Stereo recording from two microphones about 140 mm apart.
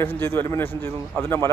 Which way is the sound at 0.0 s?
15° left (ahead or behind).